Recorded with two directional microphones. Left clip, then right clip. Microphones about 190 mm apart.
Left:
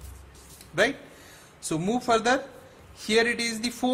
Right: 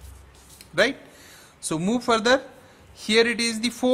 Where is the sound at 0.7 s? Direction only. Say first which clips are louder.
Right 3 dB; 25° right (ahead or behind).